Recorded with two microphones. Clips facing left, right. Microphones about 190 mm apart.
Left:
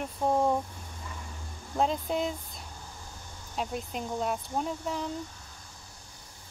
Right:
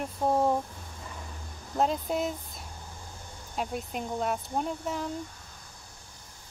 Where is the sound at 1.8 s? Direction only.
Centre (ahead or behind).